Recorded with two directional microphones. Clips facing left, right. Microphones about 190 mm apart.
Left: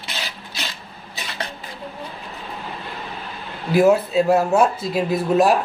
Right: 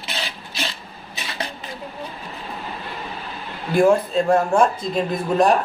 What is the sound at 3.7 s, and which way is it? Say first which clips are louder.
A man's voice: left 1 dB; 5° left (ahead or behind).